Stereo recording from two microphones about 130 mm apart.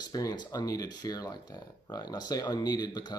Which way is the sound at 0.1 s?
30° left (ahead or behind).